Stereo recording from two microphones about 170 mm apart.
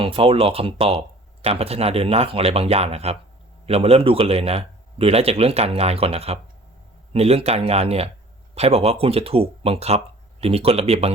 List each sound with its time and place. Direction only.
0.0 s speech: 30° right (ahead or behind)